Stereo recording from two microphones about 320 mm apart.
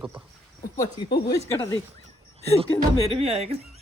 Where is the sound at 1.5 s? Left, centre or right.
Centre.